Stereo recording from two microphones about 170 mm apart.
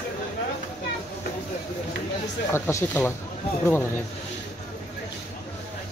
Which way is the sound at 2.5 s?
15° left (ahead or behind).